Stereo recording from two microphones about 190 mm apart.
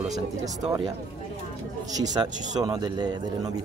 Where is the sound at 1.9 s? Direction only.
20° right (ahead or behind).